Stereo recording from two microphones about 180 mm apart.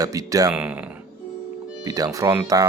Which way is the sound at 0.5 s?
5° right (ahead or behind).